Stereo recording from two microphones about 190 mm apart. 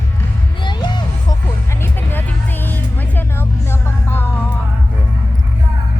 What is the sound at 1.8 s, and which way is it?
Music, 10° left (ahead or behind).